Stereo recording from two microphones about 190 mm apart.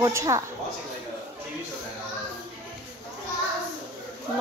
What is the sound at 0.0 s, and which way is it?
Speech, 15° right (ahead or behind).